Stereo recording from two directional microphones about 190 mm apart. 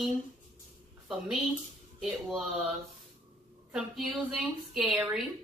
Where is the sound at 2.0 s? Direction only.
Centre (ahead or behind).